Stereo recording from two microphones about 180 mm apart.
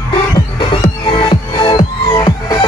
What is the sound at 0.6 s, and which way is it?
Music, 30° left (ahead or behind).